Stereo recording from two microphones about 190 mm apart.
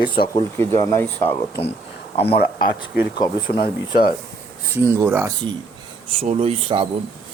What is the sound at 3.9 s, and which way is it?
Speech, 55° left (ahead or behind).